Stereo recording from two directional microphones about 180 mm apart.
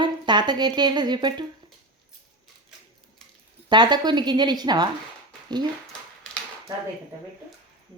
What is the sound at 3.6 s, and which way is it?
A woman's voice, 25° right (ahead or behind).